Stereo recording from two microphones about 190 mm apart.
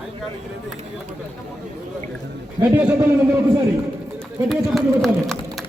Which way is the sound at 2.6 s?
25° right (ahead or behind).